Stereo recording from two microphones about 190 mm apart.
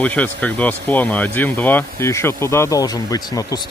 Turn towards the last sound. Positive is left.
turn(degrees=20)  # may be behind; listen again after turning